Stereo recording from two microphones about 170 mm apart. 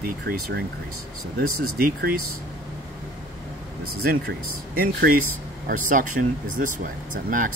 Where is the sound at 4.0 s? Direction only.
65° right (ahead or behind).